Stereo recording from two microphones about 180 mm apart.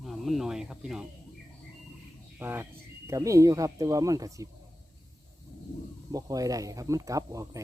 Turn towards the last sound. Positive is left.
turn(degrees=-20)  # may be behind; listen again after turning